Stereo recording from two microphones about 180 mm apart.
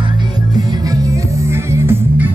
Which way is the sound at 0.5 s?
20° right (ahead or behind).